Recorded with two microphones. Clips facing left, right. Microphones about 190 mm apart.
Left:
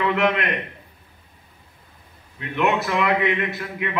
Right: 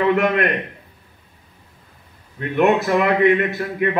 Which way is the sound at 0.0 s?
45° right (ahead or behind).